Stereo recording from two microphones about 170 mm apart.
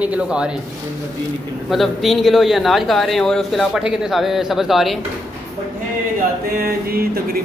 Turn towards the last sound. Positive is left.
turn(degrees=-65)  # may be behind; listen again after turning